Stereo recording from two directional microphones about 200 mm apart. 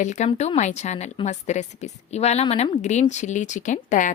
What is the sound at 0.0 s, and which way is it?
A woman's voice, 35° left (ahead or behind).